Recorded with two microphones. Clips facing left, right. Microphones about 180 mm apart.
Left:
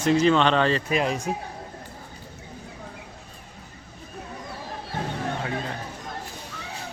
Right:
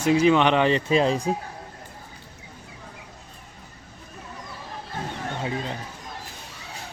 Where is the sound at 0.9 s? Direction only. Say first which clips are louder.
Right 4 dB; 30° right (ahead or behind).